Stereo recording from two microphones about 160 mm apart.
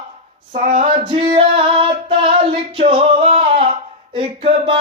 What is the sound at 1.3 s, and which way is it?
Female singing, 35° right (ahead or behind).